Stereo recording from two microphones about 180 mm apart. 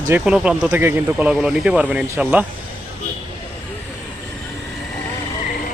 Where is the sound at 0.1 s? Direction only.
5° right (ahead or behind).